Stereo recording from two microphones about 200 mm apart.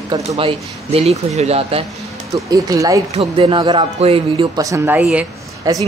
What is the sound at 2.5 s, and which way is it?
A man's voice, 15° right (ahead or behind).